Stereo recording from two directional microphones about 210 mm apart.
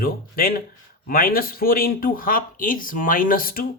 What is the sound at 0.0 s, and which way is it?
Speech, 45° left (ahead or behind).